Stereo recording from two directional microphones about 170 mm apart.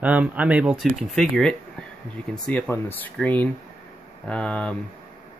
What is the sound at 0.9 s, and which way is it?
Speech, 5° left (ahead or behind).